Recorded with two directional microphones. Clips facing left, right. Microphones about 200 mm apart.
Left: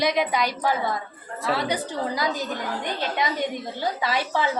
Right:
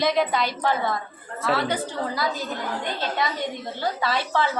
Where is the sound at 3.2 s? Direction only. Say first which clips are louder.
Left 1 dB; 20° left (ahead or behind).